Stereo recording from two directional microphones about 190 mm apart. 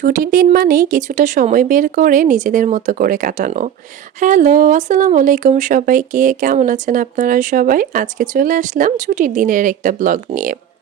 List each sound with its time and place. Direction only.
0.0 s speech: 45° right (ahead or behind)